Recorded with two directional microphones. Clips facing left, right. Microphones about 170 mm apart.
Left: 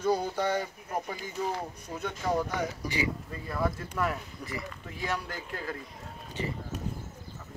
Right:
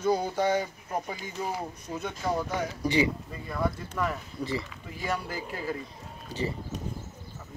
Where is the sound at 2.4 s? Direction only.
25° right (ahead or behind).